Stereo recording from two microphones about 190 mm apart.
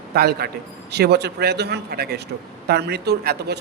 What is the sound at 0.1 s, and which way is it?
A man's voice, 55° right (ahead or behind).